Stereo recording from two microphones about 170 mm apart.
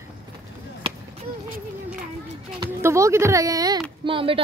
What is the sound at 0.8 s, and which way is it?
Chop, 35° right (ahead or behind).